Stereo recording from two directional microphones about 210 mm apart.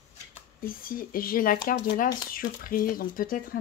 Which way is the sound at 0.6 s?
45° left (ahead or behind).